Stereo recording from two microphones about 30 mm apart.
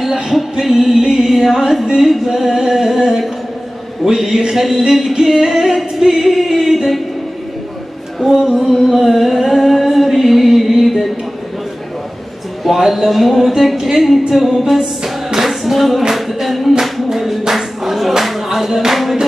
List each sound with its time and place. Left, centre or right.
0.3 s music: centre
1.3 s a sound: centre
4.6 s music: centre
5.9 s singing: centre
8.2 s female singing: centre
8.8 s singing: centre
12.6 s speech: centre
13.9 s a sound: centre
15.4 s music: centre
17.5 s clapping: centre